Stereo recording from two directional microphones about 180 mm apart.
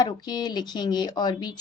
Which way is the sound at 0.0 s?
25° left (ahead or behind).